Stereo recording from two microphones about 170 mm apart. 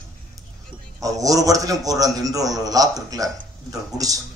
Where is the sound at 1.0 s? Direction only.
20° right (ahead or behind).